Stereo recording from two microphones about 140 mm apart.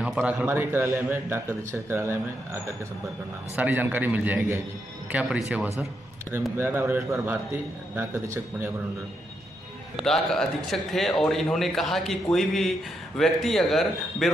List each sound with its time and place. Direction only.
0.0 s a man's voice: 10° right (ahead or behind)
6.6 s a man's voice: 15° right (ahead or behind)
10.0 s speech: centre (ahead or behind)